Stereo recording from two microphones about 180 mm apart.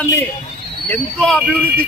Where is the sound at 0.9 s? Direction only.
5° left (ahead or behind).